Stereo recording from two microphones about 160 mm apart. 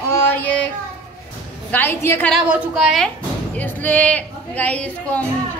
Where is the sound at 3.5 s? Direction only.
10° left (ahead or behind).